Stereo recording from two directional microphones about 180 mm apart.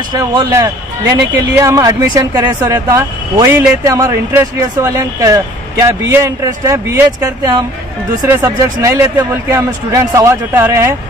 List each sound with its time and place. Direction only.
0.1 s speech: 15° right (ahead or behind)